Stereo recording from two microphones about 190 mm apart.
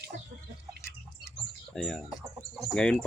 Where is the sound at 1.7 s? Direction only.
5° left (ahead or behind).